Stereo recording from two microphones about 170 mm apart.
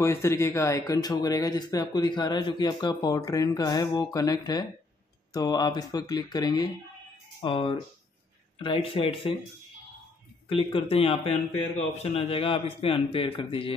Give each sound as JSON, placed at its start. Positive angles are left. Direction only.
{"t": 0.0, "sound": "a man's voice", "side_deg": 15}
{"t": 10.5, "sound": "a man's voice", "side_deg": 30}